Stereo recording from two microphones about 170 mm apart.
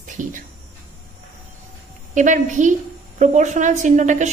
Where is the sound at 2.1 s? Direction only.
50° right (ahead or behind).